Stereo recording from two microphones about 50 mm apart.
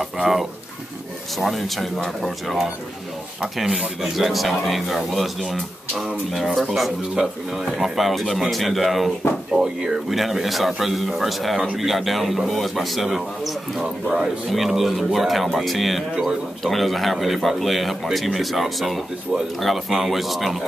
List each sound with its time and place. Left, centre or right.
0.0 s speech: centre
4.0 s speech: centre
13.7 s speech: centre
14.5 s speech: centre